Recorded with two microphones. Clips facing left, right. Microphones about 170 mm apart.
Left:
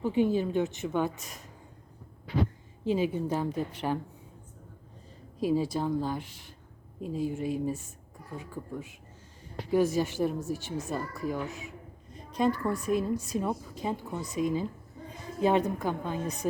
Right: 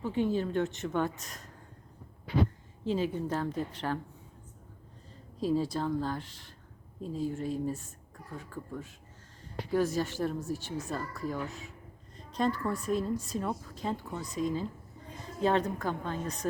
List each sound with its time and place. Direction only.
0.0 s a woman's voice: 10° left (ahead or behind)
2.8 s a woman's voice: 10° left (ahead or behind)
5.4 s a woman's voice: 10° left (ahead or behind)
9.9 s speech: 20° left (ahead or behind)
11.1 s a woman's voice: 10° left (ahead or behind)
12.1 s a sound: 10° left (ahead or behind)
12.7 s a woman's voice: 5° left (ahead or behind)